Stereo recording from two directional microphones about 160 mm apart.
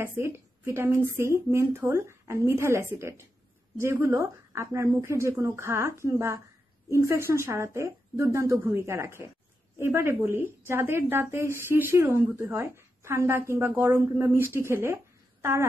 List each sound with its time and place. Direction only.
0.0 s a woman's voice: 15° right (ahead or behind)